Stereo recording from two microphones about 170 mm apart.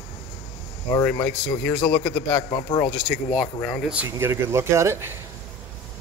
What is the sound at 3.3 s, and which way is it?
Speech, 5° right (ahead or behind).